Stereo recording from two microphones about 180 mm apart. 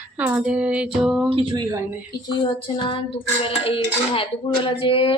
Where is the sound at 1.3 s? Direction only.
25° right (ahead or behind).